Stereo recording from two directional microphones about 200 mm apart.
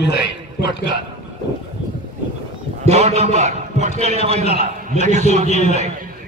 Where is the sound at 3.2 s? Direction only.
35° right (ahead or behind).